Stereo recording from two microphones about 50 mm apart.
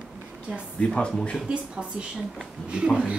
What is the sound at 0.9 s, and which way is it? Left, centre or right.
Speech, left.